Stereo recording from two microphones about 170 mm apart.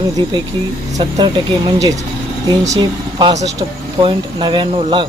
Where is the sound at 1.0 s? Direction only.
25° right (ahead or behind).